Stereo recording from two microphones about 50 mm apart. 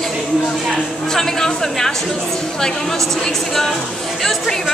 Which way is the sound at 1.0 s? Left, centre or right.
Centre.